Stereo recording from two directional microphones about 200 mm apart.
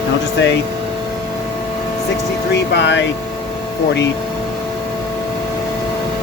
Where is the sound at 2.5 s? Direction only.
60° left (ahead or behind).